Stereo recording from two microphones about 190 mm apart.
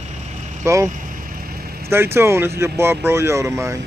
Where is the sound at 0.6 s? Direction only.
15° right (ahead or behind).